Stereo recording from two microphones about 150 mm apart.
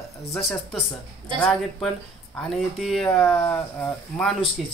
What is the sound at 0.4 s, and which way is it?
Speech, 5° left (ahead or behind).